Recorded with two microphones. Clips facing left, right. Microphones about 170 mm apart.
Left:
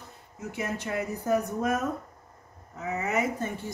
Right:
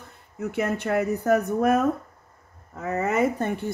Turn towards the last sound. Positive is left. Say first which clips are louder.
# right 5 dB
turn(degrees=-60)  # may be behind; listen again after turning